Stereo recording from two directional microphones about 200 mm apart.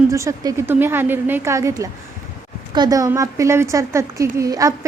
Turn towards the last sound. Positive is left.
turn(degrees=-15)  # may be behind; listen again after turning